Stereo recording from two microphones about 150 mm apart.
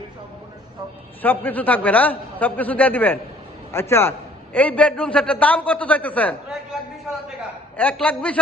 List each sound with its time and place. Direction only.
1.2 s a man's voice: 10° left (ahead or behind)
7.8 s a man's voice: 10° left (ahead or behind)